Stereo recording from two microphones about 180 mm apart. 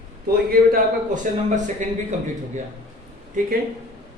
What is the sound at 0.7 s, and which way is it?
Speech, 45° right (ahead or behind).